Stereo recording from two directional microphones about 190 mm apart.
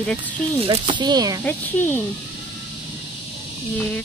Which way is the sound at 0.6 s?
25° right (ahead or behind).